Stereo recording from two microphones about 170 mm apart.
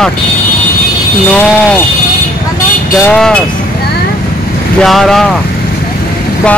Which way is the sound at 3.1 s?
5° left (ahead or behind).